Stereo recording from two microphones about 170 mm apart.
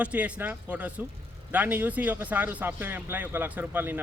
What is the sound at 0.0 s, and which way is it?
A man's voice, 10° right (ahead or behind).